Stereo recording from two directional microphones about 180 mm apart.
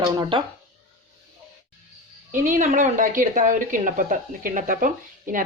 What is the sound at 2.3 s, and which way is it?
Speech, 45° right (ahead or behind).